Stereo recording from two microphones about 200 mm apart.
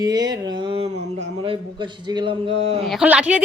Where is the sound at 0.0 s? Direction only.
20° right (ahead or behind).